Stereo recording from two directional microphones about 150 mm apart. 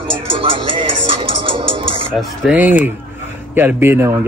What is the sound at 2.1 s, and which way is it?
Speech, centre (ahead or behind).